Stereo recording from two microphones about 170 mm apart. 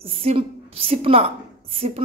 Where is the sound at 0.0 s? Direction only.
35° right (ahead or behind).